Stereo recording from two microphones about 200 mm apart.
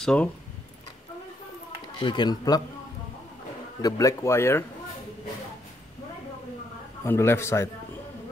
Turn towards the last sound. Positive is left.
turn(degrees=15)  # may be behind; listen again after turning